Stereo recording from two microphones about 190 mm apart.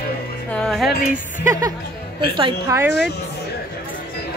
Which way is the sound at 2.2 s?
25° right (ahead or behind).